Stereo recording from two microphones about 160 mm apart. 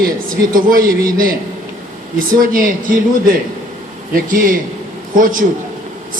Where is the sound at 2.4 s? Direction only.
60° right (ahead or behind).